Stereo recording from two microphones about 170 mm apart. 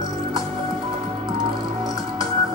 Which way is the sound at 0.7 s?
30° right (ahead or behind).